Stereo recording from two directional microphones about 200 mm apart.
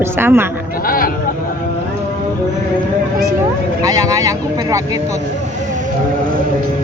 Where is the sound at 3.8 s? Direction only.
15° right (ahead or behind).